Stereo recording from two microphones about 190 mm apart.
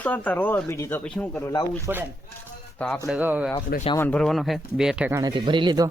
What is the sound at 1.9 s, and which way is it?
Speech, 10° right (ahead or behind).